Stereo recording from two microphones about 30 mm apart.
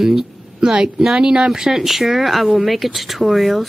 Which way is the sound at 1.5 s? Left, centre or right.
Centre.